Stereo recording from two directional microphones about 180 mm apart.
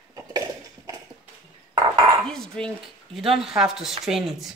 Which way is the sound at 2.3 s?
5° left (ahead or behind).